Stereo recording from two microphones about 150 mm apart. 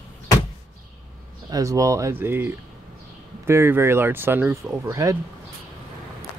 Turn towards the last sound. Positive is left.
turn(degrees=-20)  # may be behind; listen again after turning